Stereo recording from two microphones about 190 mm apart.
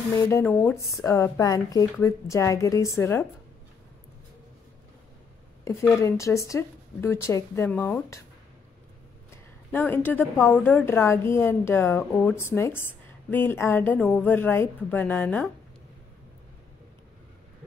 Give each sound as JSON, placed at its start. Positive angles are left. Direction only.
{"t": 0.1, "sound": "a woman's voice", "side_deg": 15}
{"t": 5.6, "sound": "a woman's voice", "side_deg": 15}
{"t": 9.7, "sound": "a woman's voice", "side_deg": 10}